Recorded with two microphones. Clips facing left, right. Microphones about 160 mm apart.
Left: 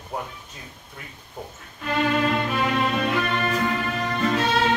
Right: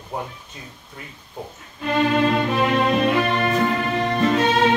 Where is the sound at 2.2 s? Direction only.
25° right (ahead or behind).